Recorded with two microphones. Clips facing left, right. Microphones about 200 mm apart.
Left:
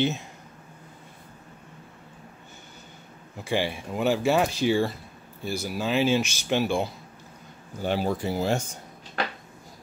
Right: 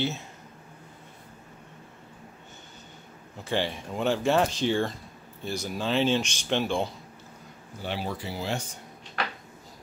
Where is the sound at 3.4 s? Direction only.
10° left (ahead or behind).